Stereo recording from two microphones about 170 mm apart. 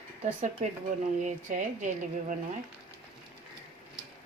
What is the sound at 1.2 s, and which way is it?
Speech, 45° right (ahead or behind).